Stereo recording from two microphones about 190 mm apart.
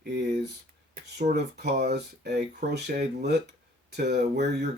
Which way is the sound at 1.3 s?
60° right (ahead or behind).